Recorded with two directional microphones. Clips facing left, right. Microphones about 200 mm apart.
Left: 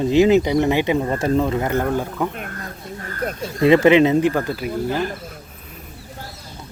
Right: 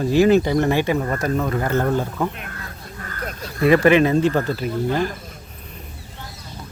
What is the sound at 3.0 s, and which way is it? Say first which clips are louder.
Speech: left 5 dB; 30° left (ahead or behind).